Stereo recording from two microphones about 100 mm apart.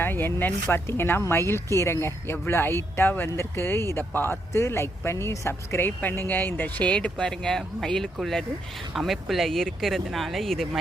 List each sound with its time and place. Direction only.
0.0 s speech: 20° left (ahead or behind); by 10.7 s 5° left (ahead or behind)